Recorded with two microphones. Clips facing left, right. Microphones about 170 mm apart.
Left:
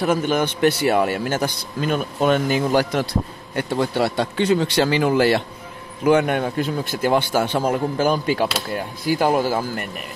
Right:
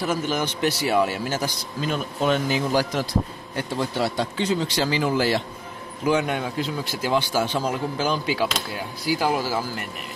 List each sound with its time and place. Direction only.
0.0 s a man's voice: 55° left (ahead or behind)